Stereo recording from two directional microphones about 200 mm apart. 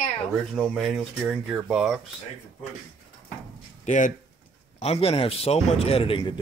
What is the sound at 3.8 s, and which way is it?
A man's voice, 40° left (ahead or behind).